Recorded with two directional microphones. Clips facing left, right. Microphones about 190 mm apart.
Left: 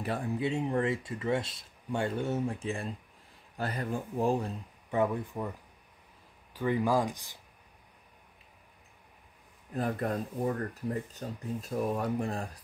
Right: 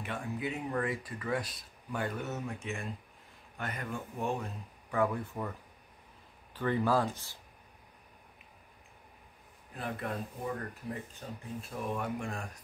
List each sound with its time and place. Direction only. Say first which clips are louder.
0.0 s speech: left 5 dB; 35° left (ahead or behind)
4.9 s speech: left 2 dB; 20° left (ahead or behind)
6.5 s speech: left 1 dB; 10° left (ahead or behind)
9.8 s speech: left 6 dB; 40° left (ahead or behind)